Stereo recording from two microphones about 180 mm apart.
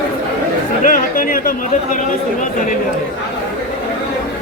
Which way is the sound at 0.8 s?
50° left (ahead or behind).